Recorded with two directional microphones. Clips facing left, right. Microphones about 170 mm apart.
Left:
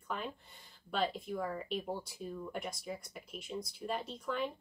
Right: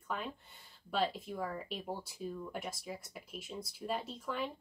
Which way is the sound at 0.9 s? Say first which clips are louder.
Even; centre (ahead or behind).